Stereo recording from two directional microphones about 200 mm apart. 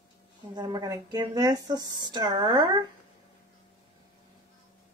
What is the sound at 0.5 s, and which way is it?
Speech, 20° right (ahead or behind).